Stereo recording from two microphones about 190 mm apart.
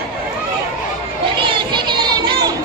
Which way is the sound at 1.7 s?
25° right (ahead or behind).